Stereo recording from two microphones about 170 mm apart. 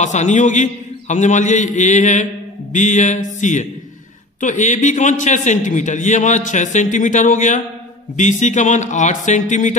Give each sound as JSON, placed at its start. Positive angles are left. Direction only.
{"t": 0.0, "sound": "a man's voice", "side_deg": 45}